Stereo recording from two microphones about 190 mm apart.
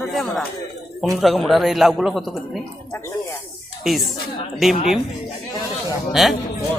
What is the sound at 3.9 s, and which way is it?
Speech, centre (ahead or behind).